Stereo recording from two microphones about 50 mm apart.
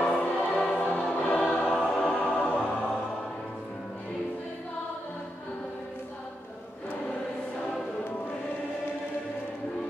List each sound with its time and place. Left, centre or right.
0.0 s choir: left; by 2.1 s centre
2.1 s music: left